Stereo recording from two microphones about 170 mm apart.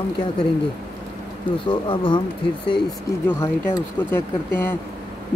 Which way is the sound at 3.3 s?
15° left (ahead or behind).